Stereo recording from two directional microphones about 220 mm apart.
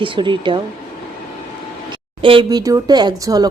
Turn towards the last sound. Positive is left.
turn(degrees=-15)  # may be behind; listen again after turning